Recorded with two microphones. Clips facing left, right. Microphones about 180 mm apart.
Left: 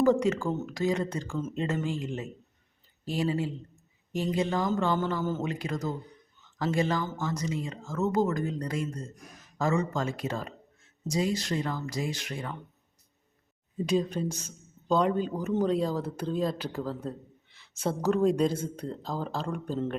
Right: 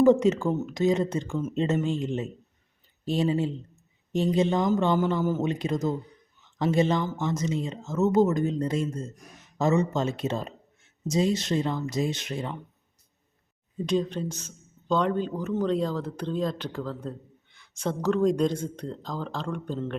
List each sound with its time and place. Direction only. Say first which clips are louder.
0.0 s speech: right 4 dB; 20° right (ahead or behind)
13.8 s speech: right 1 dB; 10° left (ahead or behind)